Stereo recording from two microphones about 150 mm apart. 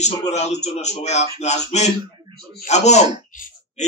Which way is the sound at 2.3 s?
90° left.